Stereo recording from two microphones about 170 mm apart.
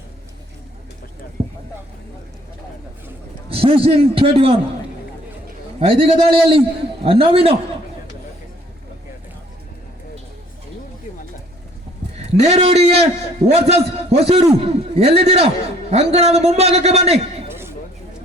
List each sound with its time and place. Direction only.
1.4 s vehicle: 30° right (ahead or behind)
3.5 s a man's voice: 35° right (ahead or behind)
5.8 s a man's voice: 35° right (ahead or behind)
12.1 s a man's voice: 40° right (ahead or behind)